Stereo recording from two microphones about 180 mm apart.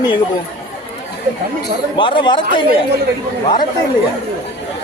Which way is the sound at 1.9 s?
25° left (ahead or behind).